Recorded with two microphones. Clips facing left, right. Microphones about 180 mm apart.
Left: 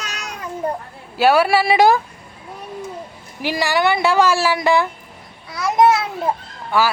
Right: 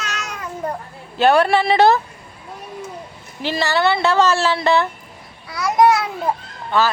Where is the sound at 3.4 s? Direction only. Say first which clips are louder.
Even; 10° left (ahead or behind).